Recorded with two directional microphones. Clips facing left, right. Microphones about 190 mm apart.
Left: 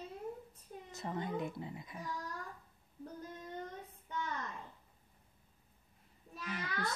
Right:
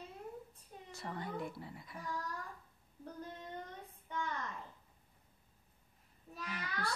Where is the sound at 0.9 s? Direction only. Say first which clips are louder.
Left 4 dB; 20° left (ahead or behind).